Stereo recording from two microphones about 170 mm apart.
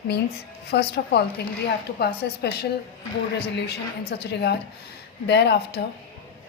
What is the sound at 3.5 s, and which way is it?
A woman's voice, 85° left.